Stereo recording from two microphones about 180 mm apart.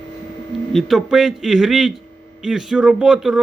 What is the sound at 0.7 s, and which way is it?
A man's voice, centre (ahead or behind).